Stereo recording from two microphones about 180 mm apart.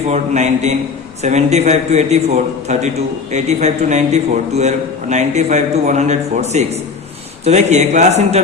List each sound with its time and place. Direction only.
0.1 s a man's voice: 40° right (ahead or behind)